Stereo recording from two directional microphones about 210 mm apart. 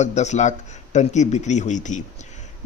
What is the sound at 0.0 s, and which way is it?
A man's voice, 35° left (ahead or behind).